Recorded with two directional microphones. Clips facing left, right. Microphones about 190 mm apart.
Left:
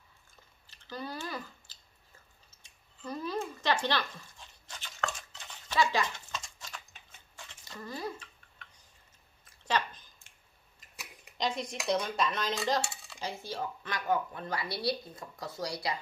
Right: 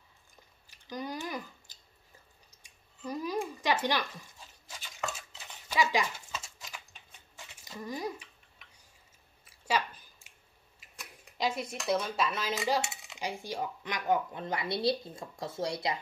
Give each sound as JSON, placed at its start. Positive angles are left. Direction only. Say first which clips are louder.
{"t": 0.7, "sound": "scissors", "louder": "right 2 dB", "side_deg": -15}
{"t": 2.5, "sound": "a sound", "louder": "right 1 dB", "side_deg": -10}
{"t": 10.8, "sound": "camera", "louder": "even", "side_deg": -5}
{"t": 11.3, "sound": "speech", "louder": "right 1 dB", "side_deg": -5}
{"t": 11.9, "sound": "cutlery", "louder": "even", "side_deg": -5}
{"t": 12.9, "sound": "speech", "louder": "right 2 dB", "side_deg": -20}